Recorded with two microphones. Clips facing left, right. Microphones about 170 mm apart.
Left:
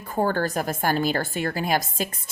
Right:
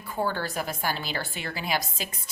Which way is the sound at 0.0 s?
45° left (ahead or behind).